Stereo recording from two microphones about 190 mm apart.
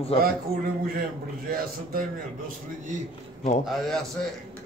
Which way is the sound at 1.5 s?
50° right (ahead or behind).